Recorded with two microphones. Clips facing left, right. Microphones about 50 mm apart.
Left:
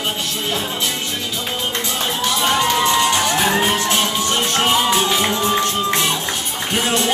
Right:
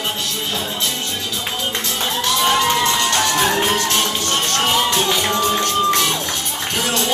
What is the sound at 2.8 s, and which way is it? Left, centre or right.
Music, centre.